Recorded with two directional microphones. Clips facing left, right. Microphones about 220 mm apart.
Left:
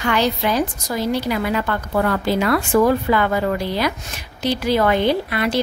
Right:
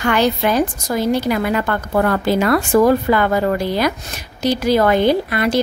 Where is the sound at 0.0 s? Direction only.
50° right (ahead or behind).